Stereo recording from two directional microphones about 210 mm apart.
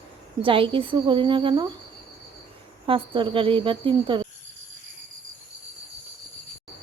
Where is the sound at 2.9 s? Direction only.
25° right (ahead or behind).